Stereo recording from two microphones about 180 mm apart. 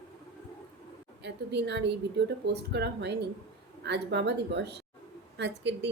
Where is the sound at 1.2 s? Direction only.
70° right (ahead or behind).